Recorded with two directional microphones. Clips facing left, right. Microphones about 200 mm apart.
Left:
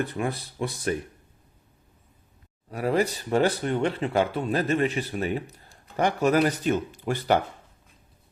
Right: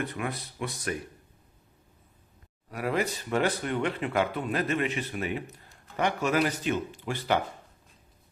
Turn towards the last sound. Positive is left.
turn(degrees=45)  # may be behind; listen again after turning